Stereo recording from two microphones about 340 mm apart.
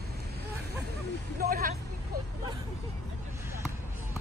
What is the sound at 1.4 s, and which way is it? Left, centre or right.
Vehicle, right.